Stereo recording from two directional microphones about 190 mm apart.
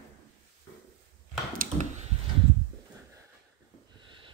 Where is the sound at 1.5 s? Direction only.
40° right (ahead or behind).